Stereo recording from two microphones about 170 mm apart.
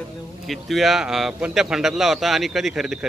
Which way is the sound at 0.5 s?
Centre (ahead or behind).